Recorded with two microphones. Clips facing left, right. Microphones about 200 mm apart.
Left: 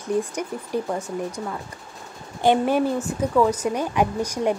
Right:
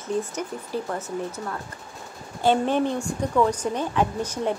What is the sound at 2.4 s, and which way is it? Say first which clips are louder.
Speech: left 2 dB; 10° left (ahead or behind).